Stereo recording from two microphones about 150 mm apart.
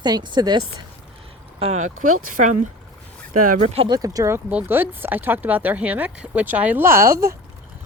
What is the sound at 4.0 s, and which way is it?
Speech, 25° right (ahead or behind).